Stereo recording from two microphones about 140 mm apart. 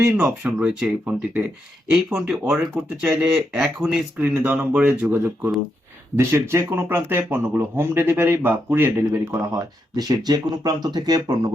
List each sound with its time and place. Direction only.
0.2 s speech: 5° right (ahead or behind); by 11.5 s 30° right (ahead or behind)